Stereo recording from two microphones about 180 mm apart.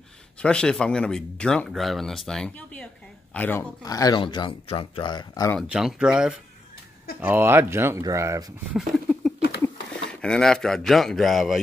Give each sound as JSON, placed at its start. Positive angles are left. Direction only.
{"t": 0.4, "sound": "speech", "side_deg": 5}
{"t": 3.8, "sound": "speech", "side_deg": 20}
{"t": 5.6, "sound": "speech", "side_deg": 0}
{"t": 8.7, "sound": "a sound", "side_deg": 0}
{"t": 10.2, "sound": "speech", "side_deg": 5}